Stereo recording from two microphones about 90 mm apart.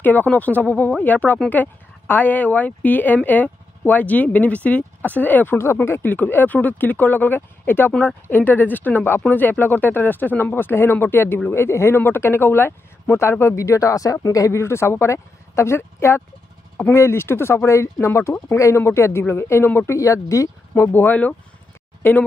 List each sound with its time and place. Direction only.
0.0 s speech: 20° left (ahead or behind)
19.9 s speech: 35° left (ahead or behind)